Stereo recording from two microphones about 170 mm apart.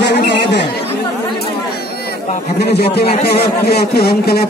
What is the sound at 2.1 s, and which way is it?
A man's voice, 75° left (ahead or behind).